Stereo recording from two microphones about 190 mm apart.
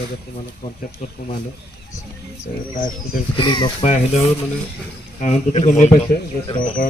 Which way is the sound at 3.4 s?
25° left (ahead or behind).